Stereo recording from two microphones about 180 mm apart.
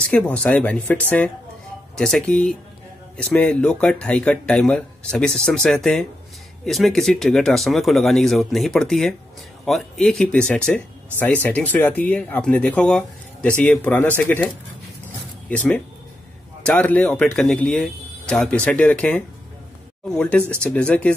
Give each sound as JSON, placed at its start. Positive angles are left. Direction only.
{"t": 0.0, "sound": "speech", "side_deg": 5}
{"t": 15.5, "sound": "speech", "side_deg": 5}